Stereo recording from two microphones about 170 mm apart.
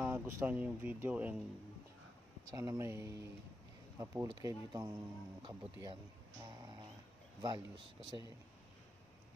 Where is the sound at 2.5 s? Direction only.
15° right (ahead or behind).